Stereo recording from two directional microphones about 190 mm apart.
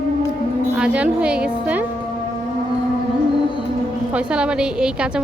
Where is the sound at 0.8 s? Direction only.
5° right (ahead or behind).